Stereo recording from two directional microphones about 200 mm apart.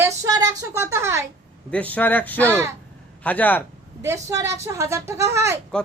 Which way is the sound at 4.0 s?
15° right (ahead or behind).